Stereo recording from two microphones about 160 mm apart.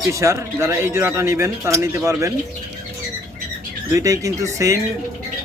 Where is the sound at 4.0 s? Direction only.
20° right (ahead or behind).